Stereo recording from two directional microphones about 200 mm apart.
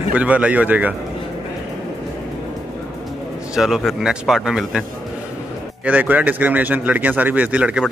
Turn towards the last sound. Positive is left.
turn(degrees=-5)  # may be behind; listen again after turning